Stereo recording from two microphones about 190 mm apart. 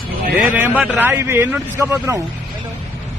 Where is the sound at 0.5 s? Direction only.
10° right (ahead or behind).